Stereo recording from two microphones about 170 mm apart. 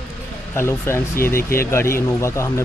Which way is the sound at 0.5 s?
15° left (ahead or behind).